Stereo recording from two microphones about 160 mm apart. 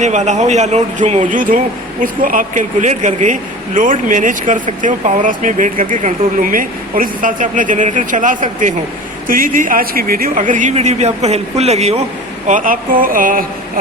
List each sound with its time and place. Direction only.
0.0 s speech: 45° right (ahead or behind)
12.5 s speech: 55° right (ahead or behind)